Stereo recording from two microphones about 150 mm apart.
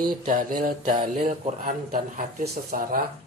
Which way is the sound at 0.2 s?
65° right (ahead or behind).